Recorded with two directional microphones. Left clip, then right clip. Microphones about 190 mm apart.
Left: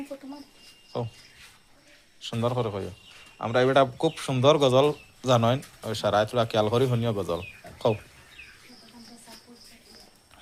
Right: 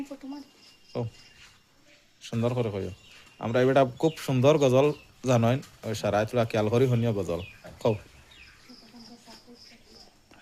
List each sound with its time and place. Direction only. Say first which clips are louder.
0.9 s speech: left 2 dB; 20° right (ahead or behind)
2.2 s speech: left 1 dB; 25° right (ahead or behind)